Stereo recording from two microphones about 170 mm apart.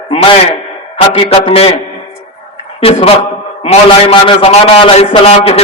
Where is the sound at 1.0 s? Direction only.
35° left (ahead or behind).